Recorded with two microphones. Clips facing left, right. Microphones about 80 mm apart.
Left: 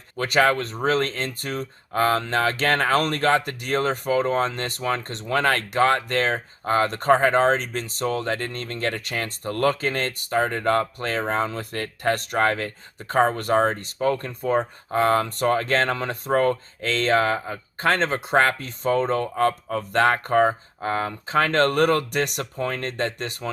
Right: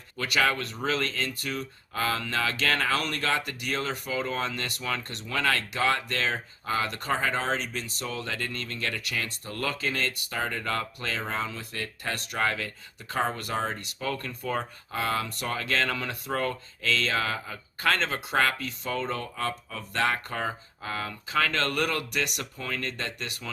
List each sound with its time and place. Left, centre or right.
0.2 s speech: left